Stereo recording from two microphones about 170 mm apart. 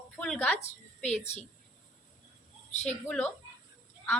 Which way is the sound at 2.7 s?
40° left (ahead or behind).